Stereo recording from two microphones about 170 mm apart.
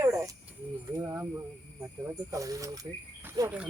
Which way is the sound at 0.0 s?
20° right (ahead or behind).